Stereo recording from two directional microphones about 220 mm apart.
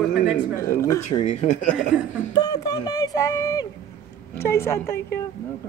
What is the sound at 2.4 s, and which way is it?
Speech, 15° left (ahead or behind).